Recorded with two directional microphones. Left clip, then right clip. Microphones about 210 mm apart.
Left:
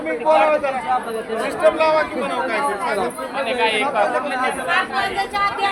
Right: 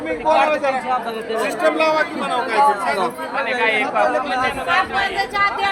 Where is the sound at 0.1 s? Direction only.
50° right (ahead or behind); by 2.9 s 35° right (ahead or behind).